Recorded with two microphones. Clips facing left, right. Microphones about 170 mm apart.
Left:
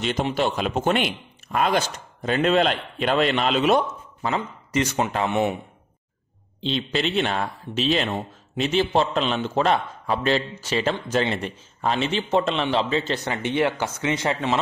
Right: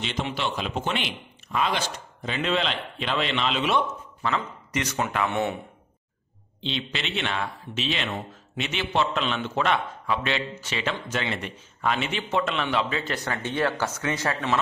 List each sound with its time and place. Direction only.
0.0 s speech: 45° left (ahead or behind)
5.3 s speech: 15° left (ahead or behind)
6.6 s speech: 40° left (ahead or behind); by 14.6 s 20° left (ahead or behind)